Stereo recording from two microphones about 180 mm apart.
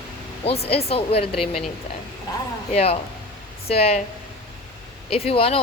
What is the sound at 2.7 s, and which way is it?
A woman's voice, 35° left (ahead or behind).